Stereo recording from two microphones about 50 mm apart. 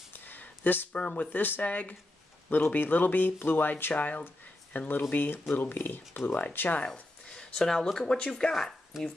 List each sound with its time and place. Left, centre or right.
0.3 s a sound: left
0.9 s speech: left
1.3 s speech: left
6.8 s speech: centre